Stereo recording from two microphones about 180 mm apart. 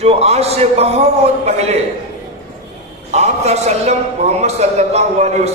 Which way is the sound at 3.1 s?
35° right (ahead or behind).